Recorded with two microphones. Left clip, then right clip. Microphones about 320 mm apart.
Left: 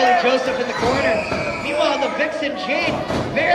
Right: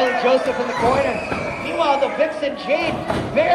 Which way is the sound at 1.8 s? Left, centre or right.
Centre.